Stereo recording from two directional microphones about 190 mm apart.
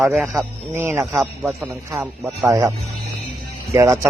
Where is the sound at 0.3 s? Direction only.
15° right (ahead or behind).